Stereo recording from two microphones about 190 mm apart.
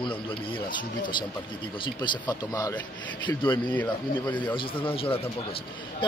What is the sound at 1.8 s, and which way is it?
Speech, 25° left (ahead or behind).